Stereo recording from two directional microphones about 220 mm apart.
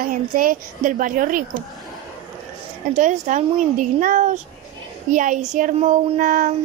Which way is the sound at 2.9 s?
35° right (ahead or behind).